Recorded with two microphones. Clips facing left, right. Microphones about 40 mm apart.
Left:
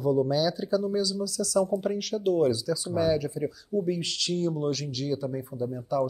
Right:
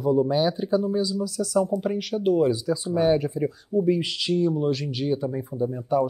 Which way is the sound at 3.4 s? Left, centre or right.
Right.